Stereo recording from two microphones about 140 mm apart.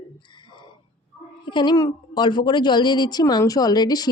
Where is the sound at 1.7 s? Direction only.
25° left (ahead or behind).